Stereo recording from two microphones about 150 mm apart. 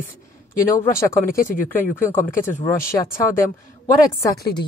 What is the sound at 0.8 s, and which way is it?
Speech, 15° left (ahead or behind).